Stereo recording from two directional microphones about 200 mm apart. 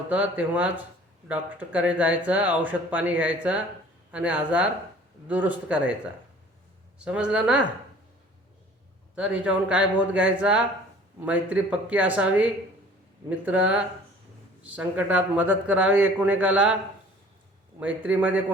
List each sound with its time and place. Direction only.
0.1 s speech: 5° right (ahead or behind)
7.0 s a man's voice: 5° right (ahead or behind)
9.1 s a man's voice: 5° right (ahead or behind)
17.7 s speech: 5° right (ahead or behind)